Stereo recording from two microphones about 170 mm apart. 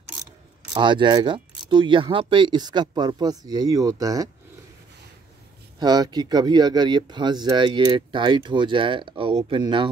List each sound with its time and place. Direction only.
0.7 s speech: 25° right (ahead or behind)
5.8 s speech: 25° right (ahead or behind)